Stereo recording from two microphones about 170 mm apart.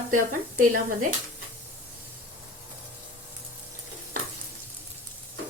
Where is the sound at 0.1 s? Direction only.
50° right (ahead or behind).